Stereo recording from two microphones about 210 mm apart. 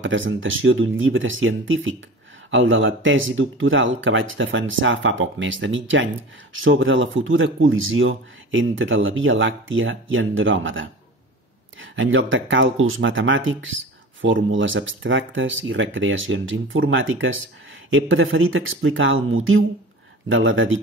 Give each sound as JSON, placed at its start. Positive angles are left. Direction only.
{"t": 0.0, "sound": "speech", "side_deg": -65}